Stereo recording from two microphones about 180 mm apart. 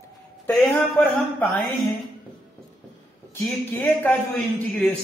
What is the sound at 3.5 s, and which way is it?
Speech, 10° left (ahead or behind).